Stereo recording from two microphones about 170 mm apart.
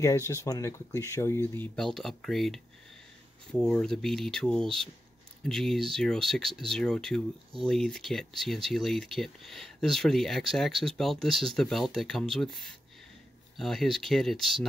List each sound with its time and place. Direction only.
0.0 s speech: 15° left (ahead or behind)
1.8 s speech: centre (ahead or behind)